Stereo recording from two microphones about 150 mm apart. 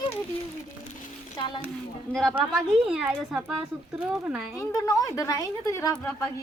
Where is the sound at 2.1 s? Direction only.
Centre (ahead or behind).